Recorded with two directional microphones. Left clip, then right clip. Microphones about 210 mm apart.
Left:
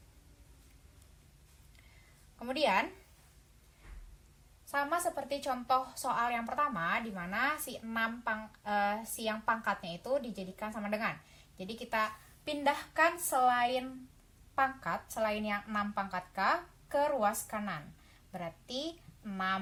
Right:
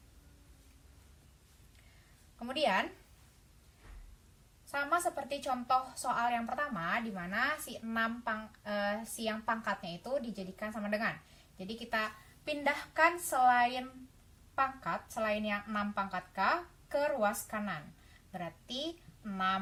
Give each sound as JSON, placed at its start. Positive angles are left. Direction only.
{"t": 2.4, "sound": "a woman's voice", "side_deg": 20}
{"t": 4.7, "sound": "a woman's voice", "side_deg": 20}